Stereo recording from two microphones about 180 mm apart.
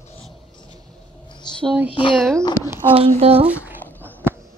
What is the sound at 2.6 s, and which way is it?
Speech, 50° left (ahead or behind).